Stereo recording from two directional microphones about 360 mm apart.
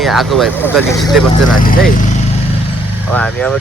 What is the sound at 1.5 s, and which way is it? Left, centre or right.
Speech, left.